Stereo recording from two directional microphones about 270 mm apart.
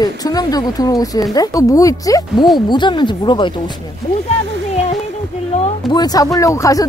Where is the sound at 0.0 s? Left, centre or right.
Centre.